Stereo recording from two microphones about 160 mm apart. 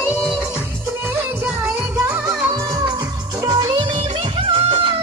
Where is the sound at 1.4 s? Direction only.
20° right (ahead or behind).